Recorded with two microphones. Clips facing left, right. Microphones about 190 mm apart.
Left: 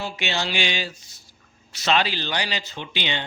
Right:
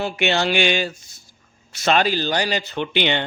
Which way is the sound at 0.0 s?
60° right (ahead or behind).